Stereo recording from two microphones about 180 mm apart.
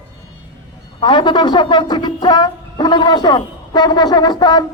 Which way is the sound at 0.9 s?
25° left (ahead or behind).